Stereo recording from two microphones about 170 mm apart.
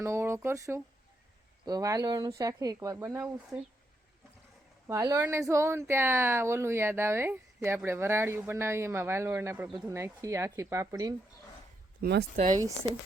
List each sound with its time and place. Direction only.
0.0 s speech: 15° right (ahead or behind)
4.9 s speech: 20° right (ahead or behind)
11.9 s speech: 70° right (ahead or behind)